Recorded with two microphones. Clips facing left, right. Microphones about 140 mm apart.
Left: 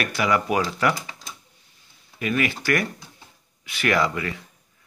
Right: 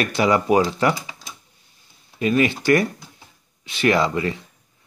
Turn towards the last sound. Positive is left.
turn(degrees=-25)  # may be behind; listen again after turning